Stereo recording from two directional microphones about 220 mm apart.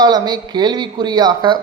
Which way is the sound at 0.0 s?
20° right (ahead or behind).